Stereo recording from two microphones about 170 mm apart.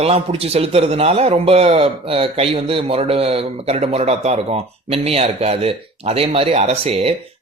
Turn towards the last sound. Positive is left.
turn(degrees=-35)  # may be behind; listen again after turning